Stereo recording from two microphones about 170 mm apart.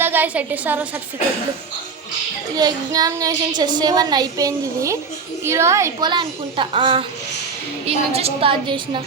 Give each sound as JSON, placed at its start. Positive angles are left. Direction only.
{"t": 0.0, "sound": "a woman's voice", "side_deg": -10}
{"t": 2.6, "sound": "a woman's voice", "side_deg": -20}